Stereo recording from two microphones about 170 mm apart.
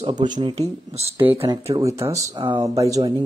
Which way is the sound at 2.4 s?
25° right (ahead or behind).